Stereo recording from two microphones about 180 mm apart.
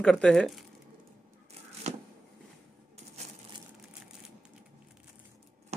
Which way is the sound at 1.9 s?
35° right (ahead or behind).